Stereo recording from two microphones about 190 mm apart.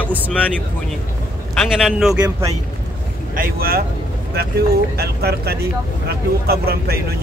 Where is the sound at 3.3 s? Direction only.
50° right (ahead or behind).